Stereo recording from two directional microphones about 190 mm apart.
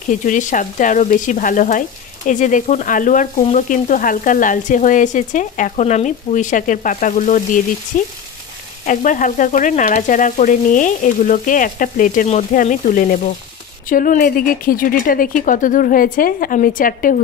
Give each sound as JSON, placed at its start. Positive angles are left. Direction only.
{"t": 0.1, "sound": "frying", "side_deg": 40}